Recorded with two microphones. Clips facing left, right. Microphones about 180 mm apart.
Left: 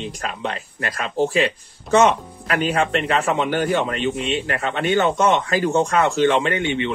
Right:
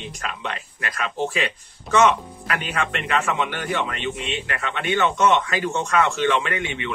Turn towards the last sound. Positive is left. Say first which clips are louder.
# left 6 dB
turn(degrees=30)  # may be behind; listen again after turning